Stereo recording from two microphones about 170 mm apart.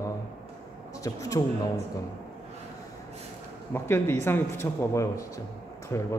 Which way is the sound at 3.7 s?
15° left (ahead or behind).